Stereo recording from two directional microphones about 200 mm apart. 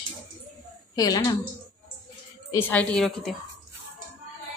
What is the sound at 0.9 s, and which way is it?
Speech, 20° left (ahead or behind).